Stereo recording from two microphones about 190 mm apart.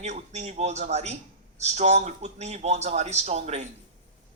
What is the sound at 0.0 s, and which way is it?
A man's voice, 35° right (ahead or behind).